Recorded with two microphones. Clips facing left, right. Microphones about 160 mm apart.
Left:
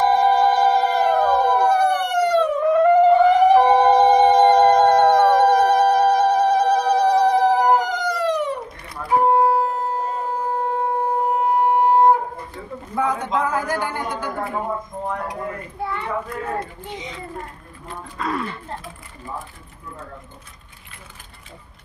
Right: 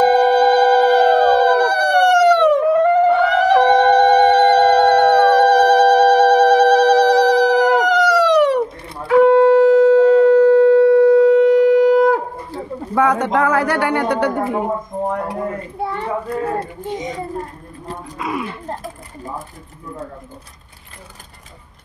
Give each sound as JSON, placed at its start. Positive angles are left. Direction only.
{"t": 0.0, "sound": "a sound", "side_deg": -75}
{"t": 9.1, "sound": "shofar", "side_deg": -90}
{"t": 12.9, "sound": "a woman's voice", "side_deg": -75}
{"t": 15.8, "sound": "a child's voice", "side_deg": -35}
{"t": 18.1, "sound": "speech", "side_deg": -10}
{"t": 18.7, "sound": "speech", "side_deg": -40}